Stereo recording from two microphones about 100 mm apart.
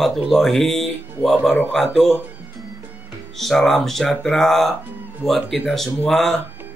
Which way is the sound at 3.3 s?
5° left (ahead or behind).